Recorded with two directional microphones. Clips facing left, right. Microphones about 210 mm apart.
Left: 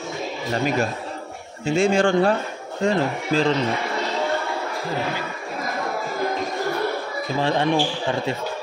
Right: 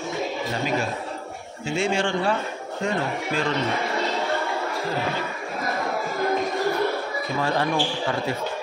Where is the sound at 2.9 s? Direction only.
30° left (ahead or behind).